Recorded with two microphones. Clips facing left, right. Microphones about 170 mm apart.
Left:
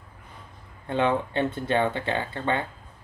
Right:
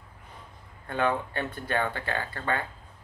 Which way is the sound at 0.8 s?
20° left (ahead or behind).